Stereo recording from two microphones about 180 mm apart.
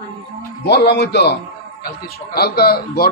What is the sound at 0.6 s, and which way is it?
Speech, 70° left (ahead or behind).